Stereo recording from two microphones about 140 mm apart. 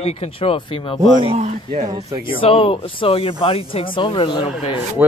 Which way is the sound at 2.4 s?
40° left (ahead or behind).